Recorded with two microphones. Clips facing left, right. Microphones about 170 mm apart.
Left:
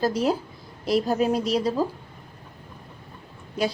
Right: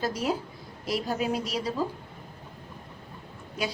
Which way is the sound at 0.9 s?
40° left (ahead or behind).